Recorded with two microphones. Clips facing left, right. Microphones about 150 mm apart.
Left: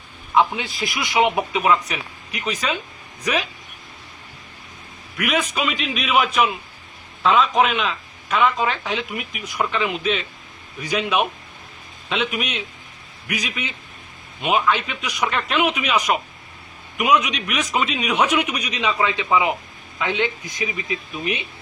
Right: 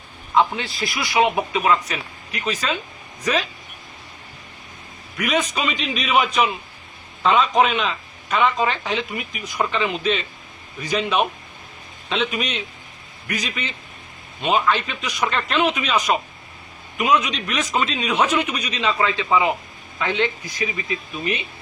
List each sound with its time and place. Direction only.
0.3 s speech: 15° left (ahead or behind)
5.1 s a man's voice: 5° left (ahead or behind)